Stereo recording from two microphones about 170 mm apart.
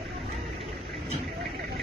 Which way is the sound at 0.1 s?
30° right (ahead or behind).